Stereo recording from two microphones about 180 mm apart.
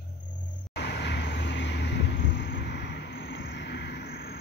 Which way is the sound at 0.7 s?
70° left (ahead or behind).